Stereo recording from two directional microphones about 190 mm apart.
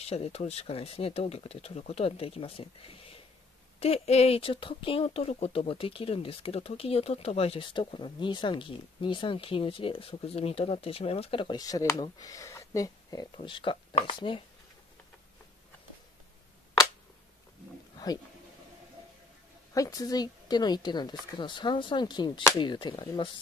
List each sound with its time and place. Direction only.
0.0 s speech: 30° left (ahead or behind)
17.9 s a sound: 20° left (ahead or behind)
19.7 s speech: 20° left (ahead or behind)